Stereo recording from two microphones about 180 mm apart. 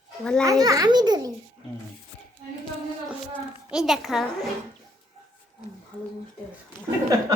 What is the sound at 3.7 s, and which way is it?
Speech, centre (ahead or behind).